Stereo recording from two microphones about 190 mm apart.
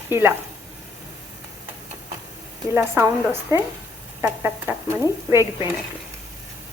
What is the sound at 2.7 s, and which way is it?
A woman's voice, 10° right (ahead or behind).